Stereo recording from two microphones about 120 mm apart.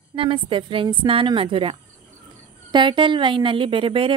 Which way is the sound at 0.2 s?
45° right (ahead or behind).